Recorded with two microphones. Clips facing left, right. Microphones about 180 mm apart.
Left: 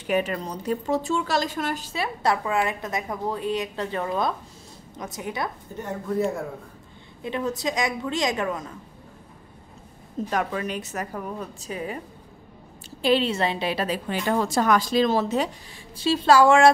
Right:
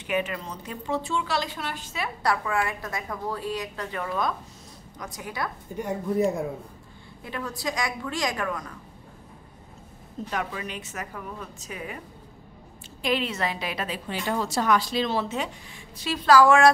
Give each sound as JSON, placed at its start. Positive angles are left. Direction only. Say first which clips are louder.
{"t": 0.0, "sound": "a woman's voice", "louder": "left 4 dB", "side_deg": 35}
{"t": 5.8, "sound": "speech", "louder": "right 1 dB", "side_deg": -15}
{"t": 7.2, "sound": "a woman's voice", "louder": "left 5 dB", "side_deg": 20}
{"t": 10.3, "sound": "a woman's voice", "louder": "left 5 dB", "side_deg": 45}
{"t": 13.0, "sound": "a woman's voice", "louder": "left 5 dB", "side_deg": 30}
{"t": 16.0, "sound": "a woman's voice", "louder": "left 1 dB", "side_deg": 25}